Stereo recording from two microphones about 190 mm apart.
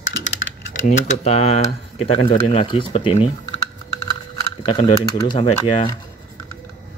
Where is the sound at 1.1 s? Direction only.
35° left (ahead or behind).